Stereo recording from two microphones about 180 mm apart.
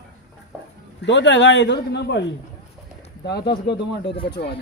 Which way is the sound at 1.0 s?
80° left.